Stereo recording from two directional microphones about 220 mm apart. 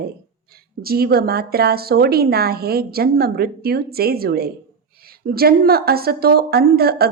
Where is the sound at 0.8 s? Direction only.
45° right (ahead or behind).